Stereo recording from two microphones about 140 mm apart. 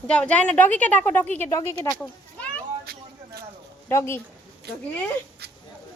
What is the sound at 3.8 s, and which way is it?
Speech, 20° left (ahead or behind).